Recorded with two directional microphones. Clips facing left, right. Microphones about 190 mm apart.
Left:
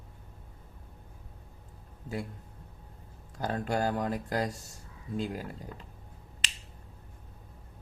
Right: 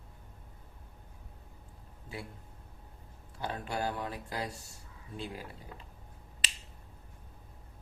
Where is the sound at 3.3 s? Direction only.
45° left (ahead or behind).